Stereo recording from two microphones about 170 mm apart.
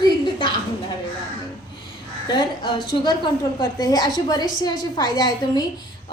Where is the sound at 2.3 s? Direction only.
30° left (ahead or behind).